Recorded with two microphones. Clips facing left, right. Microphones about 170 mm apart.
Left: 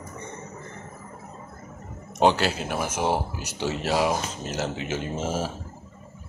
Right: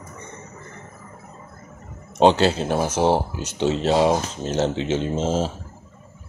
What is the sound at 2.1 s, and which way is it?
Speech, 25° right (ahead or behind).